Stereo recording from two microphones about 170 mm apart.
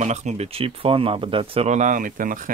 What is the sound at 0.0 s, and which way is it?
Speech, 45° right (ahead or behind).